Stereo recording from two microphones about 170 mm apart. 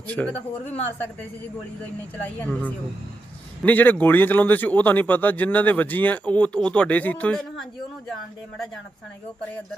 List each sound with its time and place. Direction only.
0.1 s speech: 10° left (ahead or behind)
2.4 s speech: 10° left (ahead or behind)